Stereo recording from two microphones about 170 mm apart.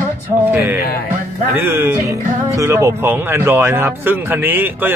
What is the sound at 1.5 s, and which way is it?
Speech, 15° right (ahead or behind).